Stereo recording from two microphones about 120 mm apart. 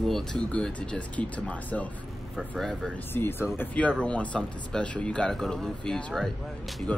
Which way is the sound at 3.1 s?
20° left (ahead or behind).